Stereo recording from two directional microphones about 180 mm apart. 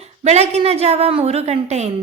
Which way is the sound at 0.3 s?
35° right (ahead or behind).